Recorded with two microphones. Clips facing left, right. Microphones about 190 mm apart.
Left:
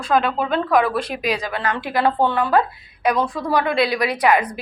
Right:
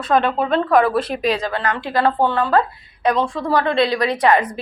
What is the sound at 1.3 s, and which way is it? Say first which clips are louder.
A woman's voice: even; 15° left (ahead or behind).